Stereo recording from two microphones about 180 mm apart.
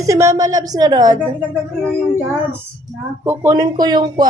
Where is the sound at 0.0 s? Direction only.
20° right (ahead or behind).